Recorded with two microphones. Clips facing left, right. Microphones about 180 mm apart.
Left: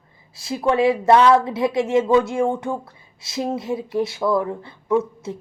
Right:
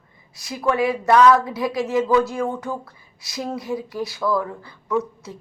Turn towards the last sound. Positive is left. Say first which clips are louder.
# left 4 dB
turn(degrees=25)  # may be behind; listen again after turning